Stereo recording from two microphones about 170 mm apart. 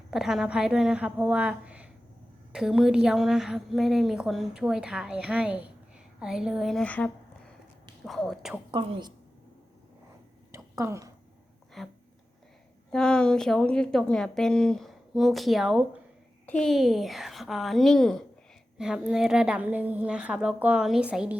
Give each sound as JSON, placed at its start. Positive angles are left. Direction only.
{"t": 0.1, "sound": "a woman's voice", "side_deg": 0}
{"t": 8.7, "sound": "a woman's voice", "side_deg": -30}
{"t": 10.5, "sound": "a sound", "side_deg": -15}
{"t": 11.8, "sound": "a woman's voice", "side_deg": 0}